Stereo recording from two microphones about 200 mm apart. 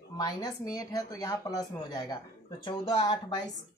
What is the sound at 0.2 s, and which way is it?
Speech, 20° left (ahead or behind).